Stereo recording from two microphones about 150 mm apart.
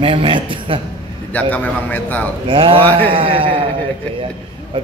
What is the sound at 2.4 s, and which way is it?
A man's voice, 35° right (ahead or behind).